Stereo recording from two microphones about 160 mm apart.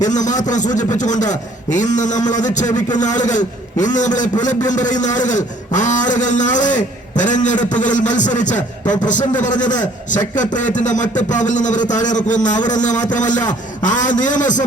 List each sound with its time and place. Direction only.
0.0 s a man's voice: 50° left (ahead or behind)